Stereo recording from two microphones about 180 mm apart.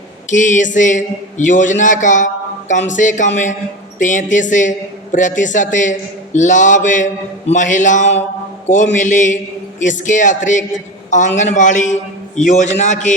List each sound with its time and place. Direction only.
0.3 s a man's voice: 45° left (ahead or behind)